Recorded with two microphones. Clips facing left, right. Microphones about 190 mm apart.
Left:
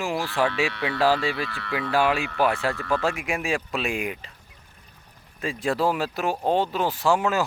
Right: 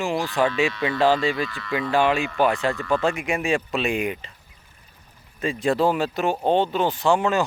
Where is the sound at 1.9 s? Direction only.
5° left (ahead or behind).